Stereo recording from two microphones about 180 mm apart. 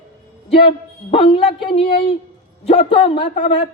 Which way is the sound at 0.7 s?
30° left (ahead or behind).